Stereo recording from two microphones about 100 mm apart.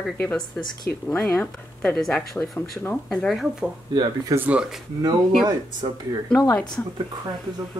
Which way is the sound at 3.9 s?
50° right (ahead or behind).